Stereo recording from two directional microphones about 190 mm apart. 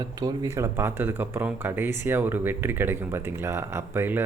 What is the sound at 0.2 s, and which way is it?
Speech, 20° right (ahead or behind).